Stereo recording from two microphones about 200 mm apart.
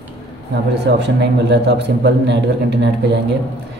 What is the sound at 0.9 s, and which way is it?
A man's voice, 55° right (ahead or behind).